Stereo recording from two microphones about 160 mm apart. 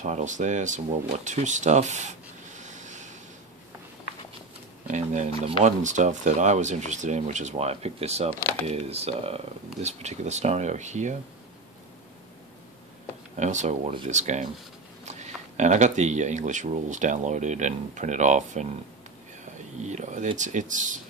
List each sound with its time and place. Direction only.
0.0 s speech: 50° right (ahead or behind)
4.8 s speech: 50° right (ahead or behind)
13.4 s speech: 50° right (ahead or behind)
19.8 s speech: 45° right (ahead or behind)